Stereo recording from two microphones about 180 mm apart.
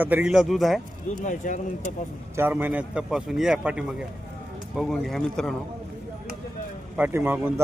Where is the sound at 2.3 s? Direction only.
10° right (ahead or behind).